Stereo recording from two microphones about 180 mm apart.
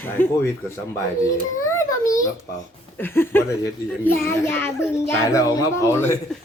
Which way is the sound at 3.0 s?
10° left (ahead or behind).